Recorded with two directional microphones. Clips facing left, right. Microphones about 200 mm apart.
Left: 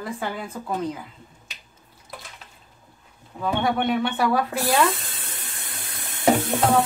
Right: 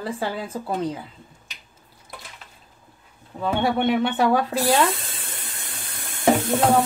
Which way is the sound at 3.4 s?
25° right (ahead or behind).